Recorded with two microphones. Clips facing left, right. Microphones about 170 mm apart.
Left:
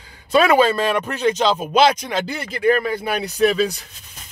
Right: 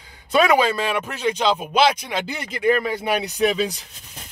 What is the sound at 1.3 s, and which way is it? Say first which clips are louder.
Speech: left 2 dB; 40° left (ahead or behind).